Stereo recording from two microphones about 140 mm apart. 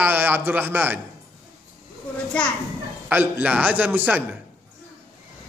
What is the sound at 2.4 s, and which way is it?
Speech, 10° left (ahead or behind).